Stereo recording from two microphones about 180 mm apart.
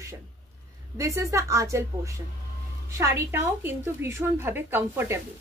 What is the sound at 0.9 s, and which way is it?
Speech, 20° right (ahead or behind).